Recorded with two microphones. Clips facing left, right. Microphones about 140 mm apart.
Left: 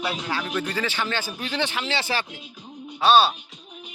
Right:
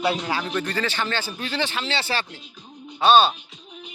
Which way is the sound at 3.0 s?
Centre (ahead or behind).